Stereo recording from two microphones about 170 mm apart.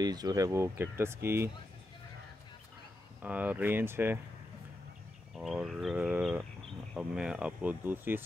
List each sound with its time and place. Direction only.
0.0 s speech: 25° right (ahead or behind)
3.2 s speech: 10° right (ahead or behind)
5.4 s speech: centre (ahead or behind)